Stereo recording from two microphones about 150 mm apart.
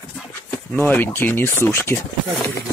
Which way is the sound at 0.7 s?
10° left (ahead or behind).